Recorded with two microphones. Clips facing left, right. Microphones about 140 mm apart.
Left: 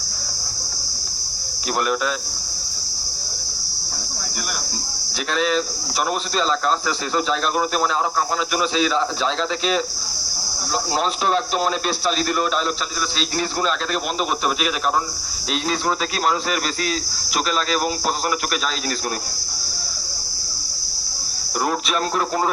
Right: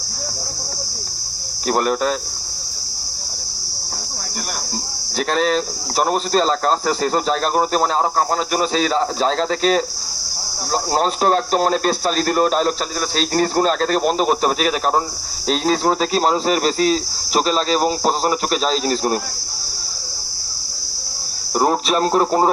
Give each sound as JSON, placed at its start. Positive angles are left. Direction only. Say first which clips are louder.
{"t": 1.6, "sound": "speech", "louder": "right 4 dB", "side_deg": -40}
{"t": 5.3, "sound": "speech", "louder": "right 2 dB", "side_deg": -40}
{"t": 21.6, "sound": "speech", "louder": "right 5 dB", "side_deg": -35}